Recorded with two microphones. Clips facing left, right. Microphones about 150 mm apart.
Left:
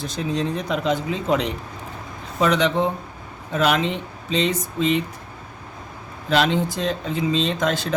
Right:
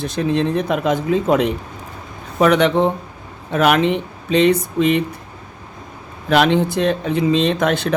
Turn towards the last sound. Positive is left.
turn(degrees=-65)  # may be behind; listen again after turning